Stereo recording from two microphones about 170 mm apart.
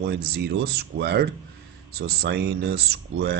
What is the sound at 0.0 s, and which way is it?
Speech, 80° right.